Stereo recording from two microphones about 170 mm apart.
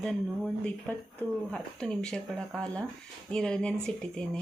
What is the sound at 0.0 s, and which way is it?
Speech, 5° left (ahead or behind).